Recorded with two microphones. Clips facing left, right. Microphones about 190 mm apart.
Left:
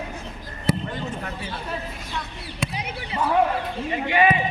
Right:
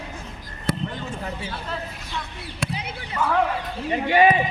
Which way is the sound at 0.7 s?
Centre (ahead or behind).